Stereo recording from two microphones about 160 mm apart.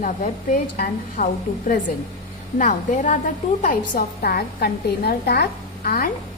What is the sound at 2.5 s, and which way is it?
Speech, 55° left (ahead or behind).